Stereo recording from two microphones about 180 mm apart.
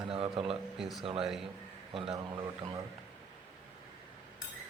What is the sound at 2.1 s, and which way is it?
Speech, 20° right (ahead or behind).